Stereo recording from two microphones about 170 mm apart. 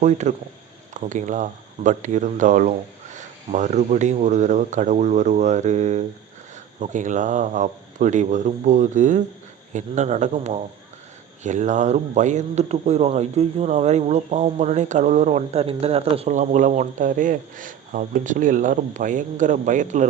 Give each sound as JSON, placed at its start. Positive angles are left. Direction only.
{"t": 0.0, "sound": "a man's voice", "side_deg": -45}